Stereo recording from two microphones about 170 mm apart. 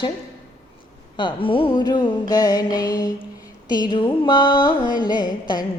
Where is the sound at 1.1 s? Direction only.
30° left (ahead or behind).